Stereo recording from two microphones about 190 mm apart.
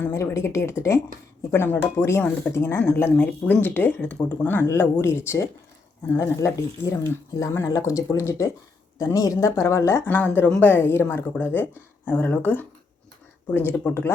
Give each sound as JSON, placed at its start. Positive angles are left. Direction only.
{"t": 0.0, "sound": "speech", "side_deg": 15}